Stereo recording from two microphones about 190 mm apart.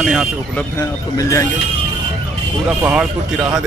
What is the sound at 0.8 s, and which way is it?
Speech, 15° left (ahead or behind).